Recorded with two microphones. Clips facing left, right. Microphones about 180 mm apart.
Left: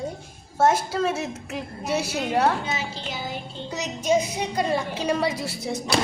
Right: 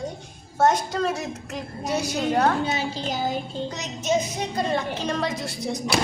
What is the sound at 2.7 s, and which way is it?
Speech, 35° right (ahead or behind).